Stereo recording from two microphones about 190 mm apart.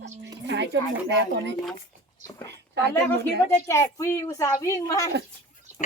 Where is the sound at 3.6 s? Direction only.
15° left (ahead or behind).